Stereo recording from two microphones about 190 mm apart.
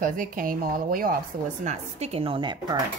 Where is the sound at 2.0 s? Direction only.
30° right (ahead or behind).